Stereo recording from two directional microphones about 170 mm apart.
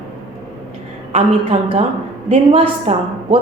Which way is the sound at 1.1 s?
40° right (ahead or behind).